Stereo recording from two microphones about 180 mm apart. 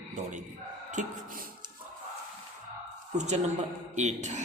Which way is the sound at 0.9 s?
45° right (ahead or behind).